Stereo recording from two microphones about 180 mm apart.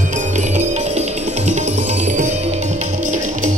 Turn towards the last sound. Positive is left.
turn(degrees=-40)  # may be behind; listen again after turning